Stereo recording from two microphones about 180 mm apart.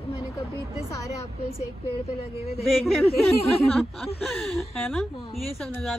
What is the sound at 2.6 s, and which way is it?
Speech, centre (ahead or behind).